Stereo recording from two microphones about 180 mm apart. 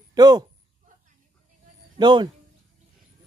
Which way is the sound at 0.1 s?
20° right (ahead or behind).